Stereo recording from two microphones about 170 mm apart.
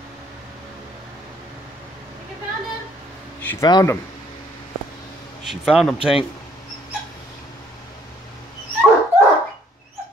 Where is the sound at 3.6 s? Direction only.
25° left (ahead or behind).